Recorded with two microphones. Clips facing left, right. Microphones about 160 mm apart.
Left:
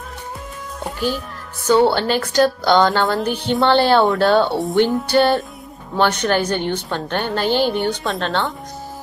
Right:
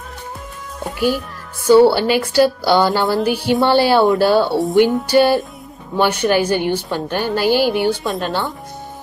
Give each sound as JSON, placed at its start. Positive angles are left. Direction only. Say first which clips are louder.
{"t": 0.9, "sound": "a woman's voice", "louder": "right 5 dB", "side_deg": -10}